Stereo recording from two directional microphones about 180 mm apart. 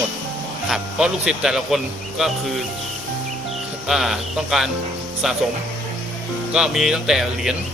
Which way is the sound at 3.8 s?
Centre (ahead or behind).